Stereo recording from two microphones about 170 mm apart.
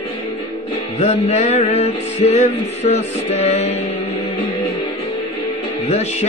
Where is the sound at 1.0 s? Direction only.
40° left (ahead or behind).